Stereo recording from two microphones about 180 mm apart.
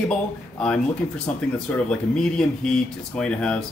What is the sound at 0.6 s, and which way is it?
Speech, 5° left (ahead or behind).